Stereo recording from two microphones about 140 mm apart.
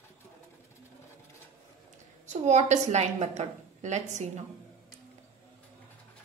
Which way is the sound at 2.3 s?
55° right (ahead or behind).